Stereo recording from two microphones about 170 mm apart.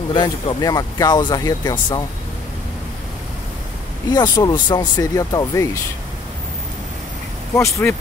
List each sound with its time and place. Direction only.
0.1 s speech: 25° left (ahead or behind)
4.1 s speech: 20° left (ahead or behind)
7.5 s speech: 15° left (ahead or behind)